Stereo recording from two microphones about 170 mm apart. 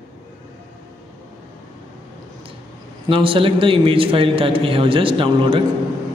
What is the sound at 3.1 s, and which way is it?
A man's voice, 30° right (ahead or behind).